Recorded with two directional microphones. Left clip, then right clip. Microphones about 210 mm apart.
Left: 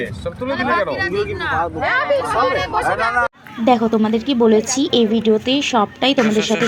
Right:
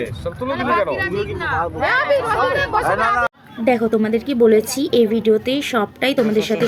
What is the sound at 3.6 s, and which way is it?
A woman's voice, centre (ahead or behind).